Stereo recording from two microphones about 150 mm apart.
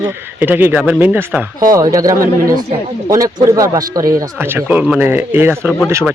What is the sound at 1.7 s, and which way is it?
Speech, 25° right (ahead or behind).